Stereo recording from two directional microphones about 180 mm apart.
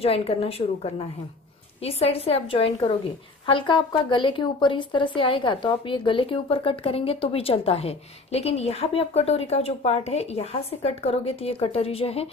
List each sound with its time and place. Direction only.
0.0 s a woman's voice: 30° left (ahead or behind)